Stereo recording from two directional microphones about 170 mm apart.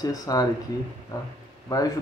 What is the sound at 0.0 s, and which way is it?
Speech, 20° left (ahead or behind).